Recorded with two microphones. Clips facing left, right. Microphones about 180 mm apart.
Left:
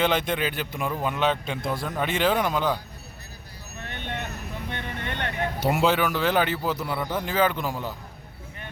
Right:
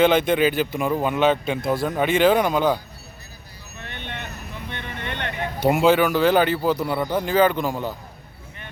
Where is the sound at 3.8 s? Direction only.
40° left (ahead or behind).